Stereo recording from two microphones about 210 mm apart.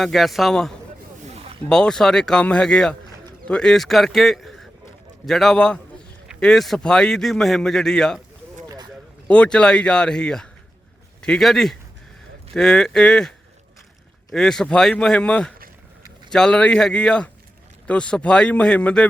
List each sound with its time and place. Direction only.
0.0 s a man's voice: centre (ahead or behind)
8.6 s a sound: 20° right (ahead or behind)
9.2 s a man's voice: 5° left (ahead or behind)